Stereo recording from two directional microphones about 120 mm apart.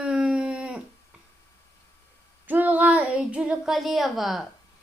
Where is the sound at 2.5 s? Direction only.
15° right (ahead or behind).